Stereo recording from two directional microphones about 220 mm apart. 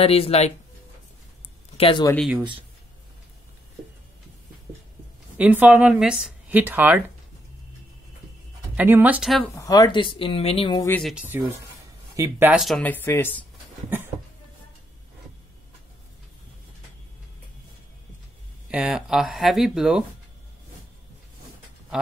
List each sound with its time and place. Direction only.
0.0 s speech: 25° left (ahead or behind)
1.8 s speech: 20° left (ahead or behind)
2.1 s speech: centre (ahead or behind)
5.4 s speech: 5° right (ahead or behind)
8.7 s speech: 10° right (ahead or behind)
9.6 s speech: 20° left (ahead or behind)
10.9 s speech: centre (ahead or behind)
18.7 s speech: 5° right (ahead or behind)